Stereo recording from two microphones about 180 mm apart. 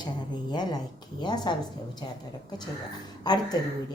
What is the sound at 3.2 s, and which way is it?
Speech, 20° left (ahead or behind).